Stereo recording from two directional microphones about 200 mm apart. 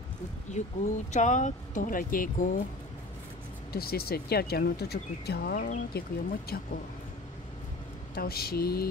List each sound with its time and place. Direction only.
0.5 s speech: 35° left (ahead or behind)
3.7 s speech: 50° left (ahead or behind)
8.1 s speech: 50° left (ahead or behind)